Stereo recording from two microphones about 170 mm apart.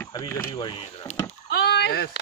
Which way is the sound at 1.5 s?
75° left (ahead or behind).